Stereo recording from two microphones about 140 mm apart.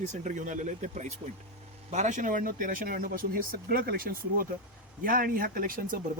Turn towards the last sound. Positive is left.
turn(degrees=-80)